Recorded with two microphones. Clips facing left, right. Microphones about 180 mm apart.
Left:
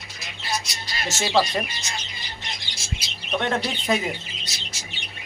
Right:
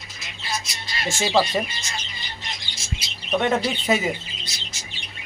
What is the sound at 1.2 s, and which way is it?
Speech, 5° right (ahead or behind).